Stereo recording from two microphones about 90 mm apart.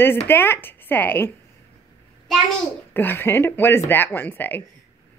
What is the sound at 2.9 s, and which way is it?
Speech, 25° left (ahead or behind).